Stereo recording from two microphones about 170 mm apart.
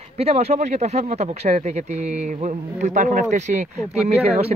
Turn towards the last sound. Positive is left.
turn(degrees=-40)  # may be behind; listen again after turning